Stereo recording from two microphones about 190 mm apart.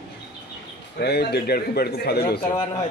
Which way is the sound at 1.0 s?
60° left (ahead or behind).